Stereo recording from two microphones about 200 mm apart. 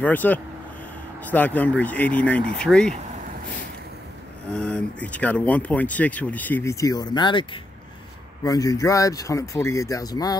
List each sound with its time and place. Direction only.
0.0 s speech: 10° left (ahead or behind)
4.5 s speech: 5° left (ahead or behind); by 7.4 s 25° left (ahead or behind)
8.5 s speech: 15° left (ahead or behind)